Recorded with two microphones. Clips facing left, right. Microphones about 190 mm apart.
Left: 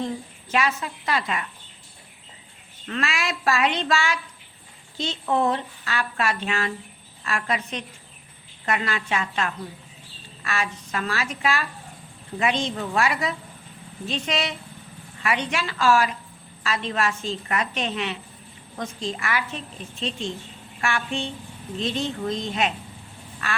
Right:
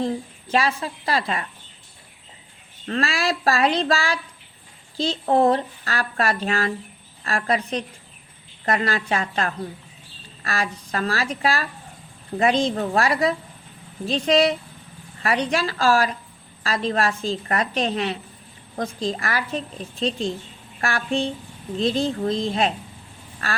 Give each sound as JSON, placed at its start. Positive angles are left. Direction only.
{"t": 0.5, "sound": "a woman's voice", "side_deg": -35}
{"t": 2.8, "sound": "a woman's voice", "side_deg": -35}